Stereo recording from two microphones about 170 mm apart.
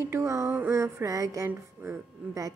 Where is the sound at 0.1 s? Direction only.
20° right (ahead or behind).